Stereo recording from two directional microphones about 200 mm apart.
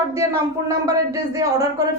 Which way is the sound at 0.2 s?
15° right (ahead or behind).